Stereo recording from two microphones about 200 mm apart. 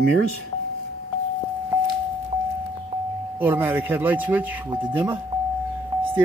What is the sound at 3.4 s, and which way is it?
Speech, 10° right (ahead or behind).